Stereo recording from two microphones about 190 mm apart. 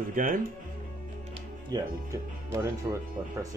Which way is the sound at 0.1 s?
45° right (ahead or behind).